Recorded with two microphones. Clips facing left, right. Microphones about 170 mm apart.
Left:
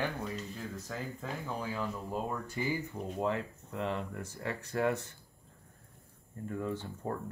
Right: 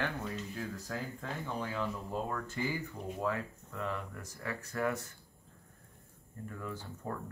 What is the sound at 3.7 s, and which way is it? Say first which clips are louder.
Speech: left 4 dB; 30° left (ahead or behind).